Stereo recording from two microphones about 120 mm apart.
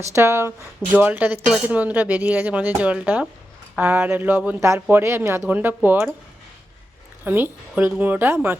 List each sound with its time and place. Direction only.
0.0 s speech: 25° right (ahead or behind)
7.3 s speech: 15° right (ahead or behind)